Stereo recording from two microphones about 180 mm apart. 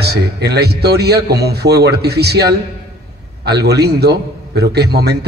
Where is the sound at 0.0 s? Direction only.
65° right (ahead or behind).